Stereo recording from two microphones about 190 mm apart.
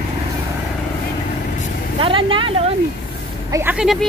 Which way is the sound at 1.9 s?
25° right (ahead or behind).